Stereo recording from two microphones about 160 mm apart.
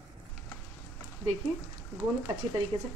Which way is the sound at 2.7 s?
30° right (ahead or behind).